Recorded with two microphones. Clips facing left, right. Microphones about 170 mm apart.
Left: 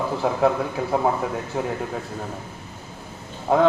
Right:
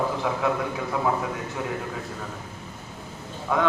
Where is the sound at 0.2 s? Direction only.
35° left (ahead or behind).